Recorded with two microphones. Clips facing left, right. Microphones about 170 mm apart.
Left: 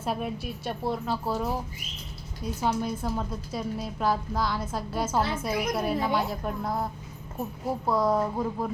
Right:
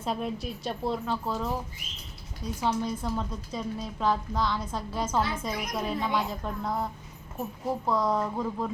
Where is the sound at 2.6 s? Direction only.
10° left (ahead or behind).